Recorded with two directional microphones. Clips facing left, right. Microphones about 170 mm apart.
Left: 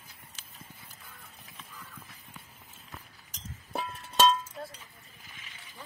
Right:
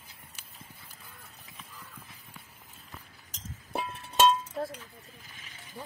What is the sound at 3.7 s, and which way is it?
Music, 5° right (ahead or behind).